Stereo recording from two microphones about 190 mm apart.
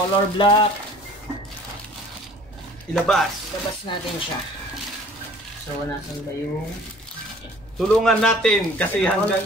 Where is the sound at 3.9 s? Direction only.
25° left (ahead or behind).